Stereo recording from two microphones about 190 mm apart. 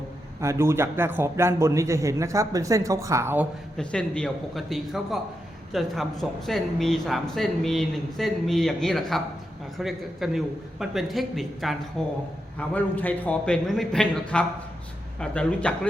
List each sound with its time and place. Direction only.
0.4 s a man's voice: 15° right (ahead or behind)
3.8 s a man's voice: 5° left (ahead or behind)